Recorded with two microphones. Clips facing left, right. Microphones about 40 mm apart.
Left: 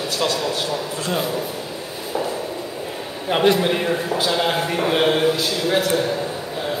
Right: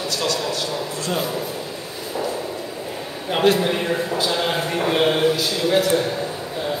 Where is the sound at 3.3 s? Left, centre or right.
Centre.